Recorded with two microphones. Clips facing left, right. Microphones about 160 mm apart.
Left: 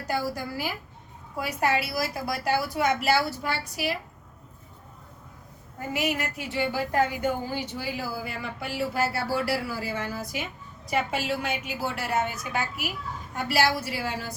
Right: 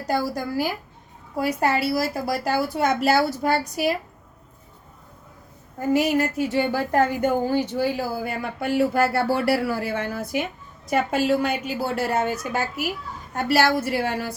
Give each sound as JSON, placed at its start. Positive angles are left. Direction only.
{"t": 0.1, "sound": "a woman's voice", "side_deg": -40}
{"t": 5.9, "sound": "a woman's voice", "side_deg": -35}
{"t": 13.3, "sound": "a woman's voice", "side_deg": -45}